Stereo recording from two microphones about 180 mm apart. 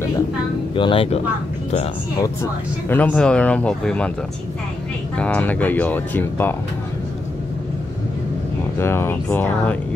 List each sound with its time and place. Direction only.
0.7 s speech: 30° left (ahead or behind)
2.9 s speech: 10° left (ahead or behind)
5.1 s speech: 5° left (ahead or behind)
8.7 s speech: 15° left (ahead or behind)